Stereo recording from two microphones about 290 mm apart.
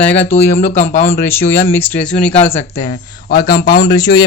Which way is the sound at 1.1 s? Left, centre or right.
Centre.